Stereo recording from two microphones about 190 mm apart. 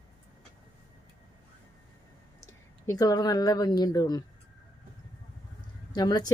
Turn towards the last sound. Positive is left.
turn(degrees=20)  # may be behind; listen again after turning